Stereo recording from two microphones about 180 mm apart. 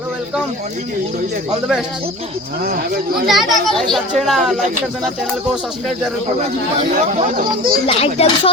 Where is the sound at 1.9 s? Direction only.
30° right (ahead or behind).